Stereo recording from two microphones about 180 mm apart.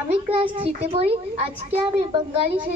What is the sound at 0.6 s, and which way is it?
A child's voice, 35° right (ahead or behind).